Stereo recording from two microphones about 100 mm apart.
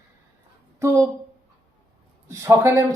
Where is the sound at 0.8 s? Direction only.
30° right (ahead or behind).